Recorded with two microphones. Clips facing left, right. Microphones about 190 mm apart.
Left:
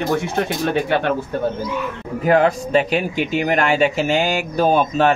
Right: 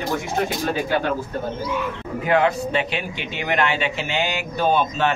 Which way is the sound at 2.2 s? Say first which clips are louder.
Left 4 dB; 40° left (ahead or behind).